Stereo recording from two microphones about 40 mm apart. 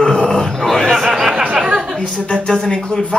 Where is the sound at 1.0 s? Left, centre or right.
Centre.